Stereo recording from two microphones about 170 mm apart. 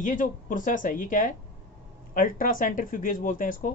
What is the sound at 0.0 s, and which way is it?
Speech, 50° left (ahead or behind).